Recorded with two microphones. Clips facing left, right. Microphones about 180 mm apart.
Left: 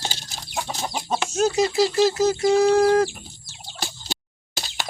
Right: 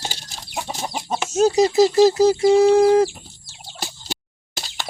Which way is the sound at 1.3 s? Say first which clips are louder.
Right 5 dB; 35° right (ahead or behind).